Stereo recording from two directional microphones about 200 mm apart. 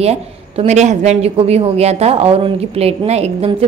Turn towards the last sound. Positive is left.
turn(degrees=-30)  # may be behind; listen again after turning